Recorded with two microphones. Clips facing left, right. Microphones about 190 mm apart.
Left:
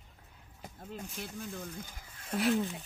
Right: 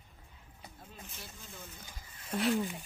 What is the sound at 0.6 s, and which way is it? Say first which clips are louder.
Speech: left 8 dB; 55° left (ahead or behind).